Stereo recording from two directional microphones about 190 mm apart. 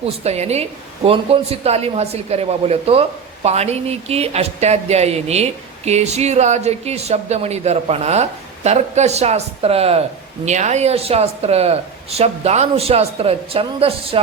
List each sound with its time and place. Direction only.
0.0 s a woman's voice: 35° right (ahead or behind)